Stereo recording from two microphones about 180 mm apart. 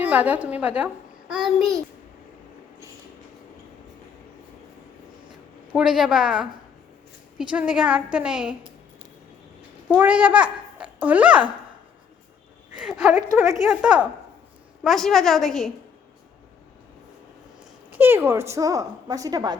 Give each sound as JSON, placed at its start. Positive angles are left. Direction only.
{"t": 0.0, "sound": "a woman's voice", "side_deg": -10}
{"t": 5.7, "sound": "a woman's voice", "side_deg": -5}
{"t": 7.5, "sound": "a woman's voice", "side_deg": -5}
{"t": 9.9, "sound": "a child's voice", "side_deg": -10}
{"t": 12.7, "sound": "speech", "side_deg": -5}
{"t": 13.3, "sound": "a woman's voice", "side_deg": -15}
{"t": 13.6, "sound": "a woman's voice", "side_deg": -5}
{"t": 17.9, "sound": "a woman's voice", "side_deg": -10}